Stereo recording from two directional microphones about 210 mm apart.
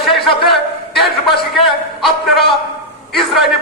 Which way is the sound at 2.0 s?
Centre (ahead or behind).